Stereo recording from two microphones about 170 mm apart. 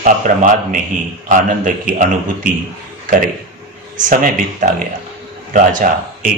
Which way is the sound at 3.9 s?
55° right (ahead or behind).